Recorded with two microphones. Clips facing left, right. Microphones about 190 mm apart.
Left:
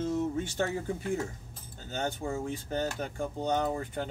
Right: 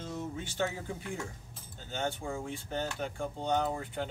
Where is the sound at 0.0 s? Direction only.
45° left (ahead or behind).